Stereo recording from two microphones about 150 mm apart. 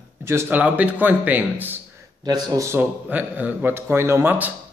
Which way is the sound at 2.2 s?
25° right (ahead or behind).